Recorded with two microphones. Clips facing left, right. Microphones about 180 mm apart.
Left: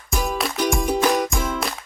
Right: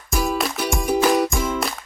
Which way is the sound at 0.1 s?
Centre (ahead or behind).